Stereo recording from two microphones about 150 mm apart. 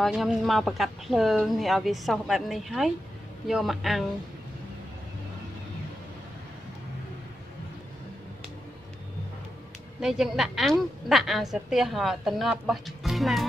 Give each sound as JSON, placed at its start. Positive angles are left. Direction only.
{"t": 0.0, "sound": "a woman's voice", "side_deg": -5}
{"t": 9.9, "sound": "a woman's voice", "side_deg": -5}